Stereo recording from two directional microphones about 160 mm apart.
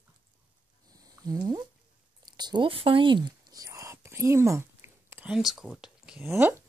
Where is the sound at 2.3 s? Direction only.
25° right (ahead or behind); by 6.2 s 5° right (ahead or behind).